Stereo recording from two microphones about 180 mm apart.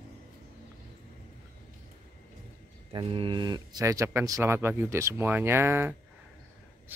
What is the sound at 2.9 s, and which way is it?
Speech, 30° right (ahead or behind).